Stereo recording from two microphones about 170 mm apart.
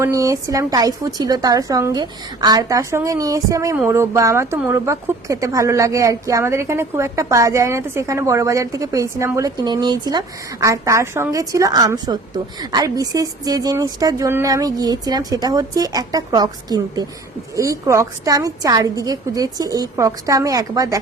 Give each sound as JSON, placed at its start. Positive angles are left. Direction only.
{"t": 0.0, "sound": "speech", "side_deg": -20}